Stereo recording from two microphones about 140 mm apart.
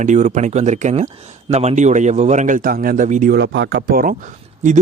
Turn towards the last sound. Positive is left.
turn(degrees=-65)  # may be behind; listen again after turning